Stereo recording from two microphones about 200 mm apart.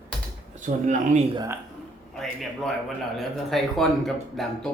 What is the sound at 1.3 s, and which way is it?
Speech, 20° right (ahead or behind).